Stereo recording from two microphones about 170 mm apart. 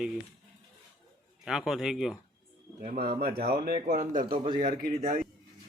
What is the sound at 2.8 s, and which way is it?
Speech, 55° right (ahead or behind).